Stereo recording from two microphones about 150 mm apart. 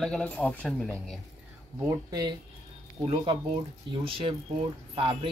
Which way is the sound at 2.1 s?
30° right (ahead or behind).